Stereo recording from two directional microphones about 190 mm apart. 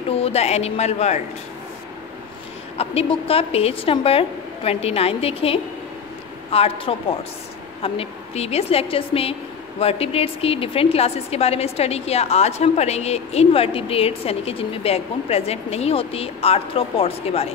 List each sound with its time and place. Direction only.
0.1 s a woman's voice: 35° left (ahead or behind)
2.8 s a woman's voice: 30° left (ahead or behind)